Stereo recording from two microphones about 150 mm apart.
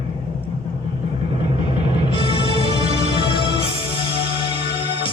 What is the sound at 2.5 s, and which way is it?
Music, 40° right (ahead or behind).